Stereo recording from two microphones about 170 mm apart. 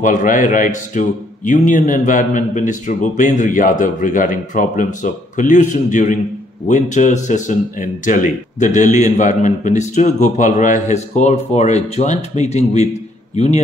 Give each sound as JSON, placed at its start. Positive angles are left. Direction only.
{"t": 0.0, "sound": "a man's voice", "side_deg": 50}